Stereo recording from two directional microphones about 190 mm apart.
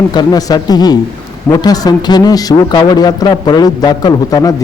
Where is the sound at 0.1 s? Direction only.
20° left (ahead or behind).